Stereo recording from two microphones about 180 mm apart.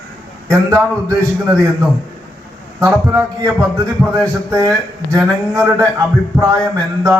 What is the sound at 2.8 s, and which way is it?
A man's voice, 15° right (ahead or behind).